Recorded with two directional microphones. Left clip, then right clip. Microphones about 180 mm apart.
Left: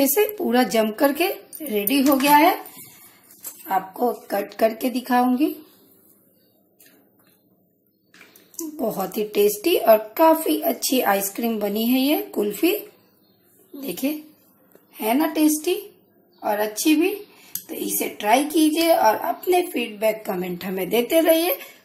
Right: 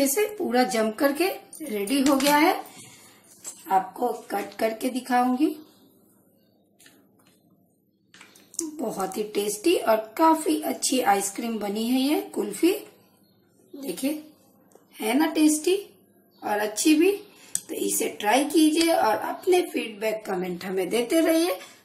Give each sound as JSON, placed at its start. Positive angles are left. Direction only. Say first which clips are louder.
{"t": 0.0, "sound": "a child's voice", "louder": "left 4 dB", "side_deg": 25}
{"t": 3.6, "sound": "a woman's voice", "louder": "left 1 dB", "side_deg": 35}
{"t": 8.7, "sound": "a child's voice", "louder": "left 4 dB", "side_deg": 25}
{"t": 13.7, "sound": "a woman's voice", "louder": "left 3 dB", "side_deg": 30}